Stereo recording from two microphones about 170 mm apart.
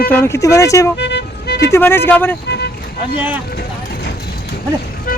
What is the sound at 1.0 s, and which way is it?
Vehicle, 90° left.